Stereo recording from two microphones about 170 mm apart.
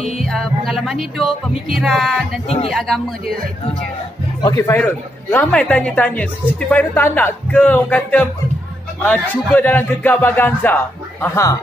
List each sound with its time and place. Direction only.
0.2 s music: centre (ahead or behind)
2.4 s speech: 35° left (ahead or behind)
2.7 s music: centre (ahead or behind)
4.4 s speech: 20° left (ahead or behind)